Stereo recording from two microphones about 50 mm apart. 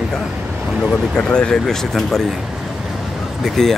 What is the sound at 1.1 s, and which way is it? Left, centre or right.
Speech, centre.